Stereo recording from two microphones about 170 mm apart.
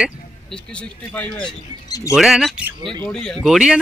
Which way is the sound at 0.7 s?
10° left (ahead or behind).